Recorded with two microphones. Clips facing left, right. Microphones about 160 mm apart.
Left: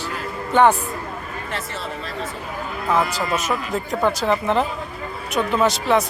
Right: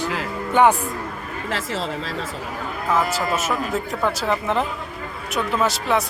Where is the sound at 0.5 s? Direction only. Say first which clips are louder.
Left 1 dB; 10° right (ahead or behind).